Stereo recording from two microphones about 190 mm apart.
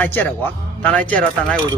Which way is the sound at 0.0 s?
10° left (ahead or behind).